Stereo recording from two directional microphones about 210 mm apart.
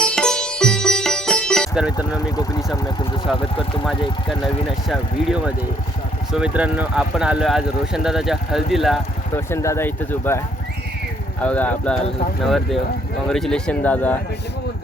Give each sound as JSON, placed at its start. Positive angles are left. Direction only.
{"t": 0.0, "sound": "sitar", "side_deg": 5}
{"t": 2.0, "sound": "speech", "side_deg": 15}
{"t": 3.3, "sound": "speech", "side_deg": -5}
{"t": 9.3, "sound": "speech", "side_deg": 15}
{"t": 11.4, "sound": "speech", "side_deg": 5}